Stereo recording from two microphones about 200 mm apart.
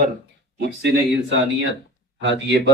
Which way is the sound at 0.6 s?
55° right (ahead or behind).